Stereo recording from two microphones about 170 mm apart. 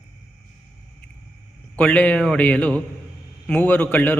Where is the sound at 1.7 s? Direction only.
10° left (ahead or behind).